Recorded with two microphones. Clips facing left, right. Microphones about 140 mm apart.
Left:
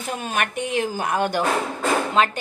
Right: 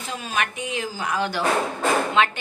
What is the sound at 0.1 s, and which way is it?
A woman's voice, 55° left (ahead or behind).